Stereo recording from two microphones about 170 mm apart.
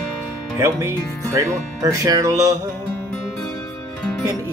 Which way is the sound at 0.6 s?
15° right (ahead or behind).